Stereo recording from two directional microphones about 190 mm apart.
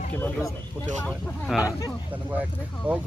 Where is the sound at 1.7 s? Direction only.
20° left (ahead or behind).